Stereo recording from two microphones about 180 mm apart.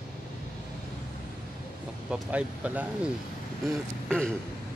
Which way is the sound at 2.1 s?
5° right (ahead or behind).